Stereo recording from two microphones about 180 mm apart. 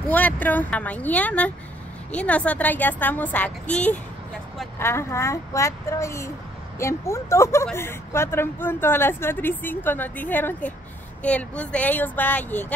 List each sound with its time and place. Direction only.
0.1 s speech: 10° left (ahead or behind)